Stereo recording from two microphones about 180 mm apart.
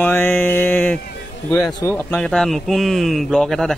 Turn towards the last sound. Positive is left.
turn(degrees=0)  # may be behind; listen again after turning